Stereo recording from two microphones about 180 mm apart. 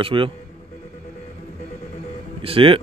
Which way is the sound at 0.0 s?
30° right (ahead or behind).